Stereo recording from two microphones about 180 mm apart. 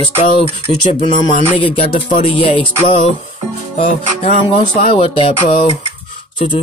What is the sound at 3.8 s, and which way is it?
Music, 45° left (ahead or behind).